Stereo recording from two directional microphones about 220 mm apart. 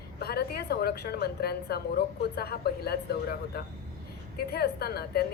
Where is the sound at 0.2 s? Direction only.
45° left (ahead or behind).